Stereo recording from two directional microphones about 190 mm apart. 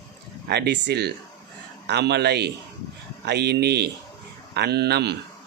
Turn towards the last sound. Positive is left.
turn(degrees=-60)  # may be behind; listen again after turning